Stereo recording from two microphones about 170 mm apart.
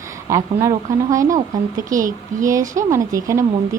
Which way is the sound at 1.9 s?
50° right (ahead or behind).